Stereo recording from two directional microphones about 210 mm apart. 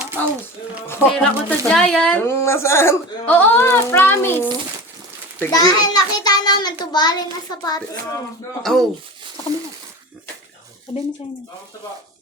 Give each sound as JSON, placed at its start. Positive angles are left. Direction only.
{"t": 1.0, "sound": "a woman's voice", "side_deg": 5}
{"t": 8.6, "sound": "speech", "side_deg": 0}